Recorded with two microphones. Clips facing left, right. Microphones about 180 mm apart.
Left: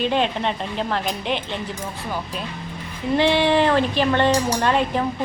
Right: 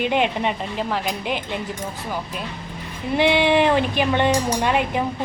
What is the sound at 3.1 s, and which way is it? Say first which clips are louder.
Speech: even; 15° right (ahead or behind).